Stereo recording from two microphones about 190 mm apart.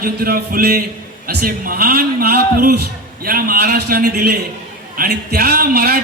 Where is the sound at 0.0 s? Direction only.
50° right (ahead or behind).